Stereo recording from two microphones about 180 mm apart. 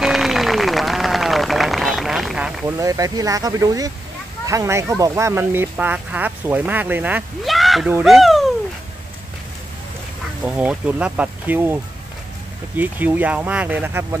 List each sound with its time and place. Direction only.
0.0 s a sound: centre (ahead or behind)
2.8 s speech: 20° right (ahead or behind); by 8.5 s centre (ahead or behind)
10.4 s speech: 5° right (ahead or behind)